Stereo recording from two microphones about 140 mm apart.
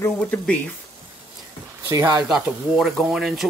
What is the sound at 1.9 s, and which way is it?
Speech, 20° right (ahead or behind).